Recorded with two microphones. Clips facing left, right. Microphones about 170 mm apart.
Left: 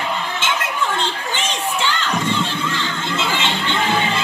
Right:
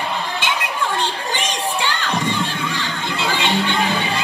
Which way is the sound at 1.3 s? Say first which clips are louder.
Even; 15° right (ahead or behind).